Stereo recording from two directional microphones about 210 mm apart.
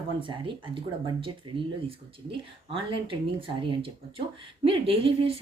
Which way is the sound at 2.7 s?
25° right (ahead or behind).